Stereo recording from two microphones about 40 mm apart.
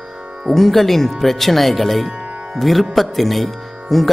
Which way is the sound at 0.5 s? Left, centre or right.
Centre.